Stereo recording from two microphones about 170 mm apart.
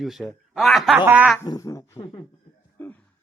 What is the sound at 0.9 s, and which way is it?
Speech, 10° right (ahead or behind).